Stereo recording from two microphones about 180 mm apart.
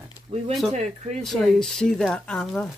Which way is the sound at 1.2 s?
Centre (ahead or behind).